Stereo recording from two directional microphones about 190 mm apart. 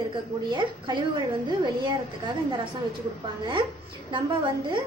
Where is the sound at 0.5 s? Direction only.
25° right (ahead or behind).